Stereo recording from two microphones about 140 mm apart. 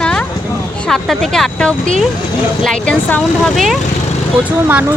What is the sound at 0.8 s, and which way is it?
Speech, centre (ahead or behind).